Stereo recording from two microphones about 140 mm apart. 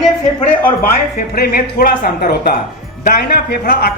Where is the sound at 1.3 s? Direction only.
90° left.